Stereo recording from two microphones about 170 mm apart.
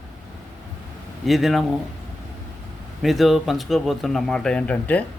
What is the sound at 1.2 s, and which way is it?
Speech, centre (ahead or behind).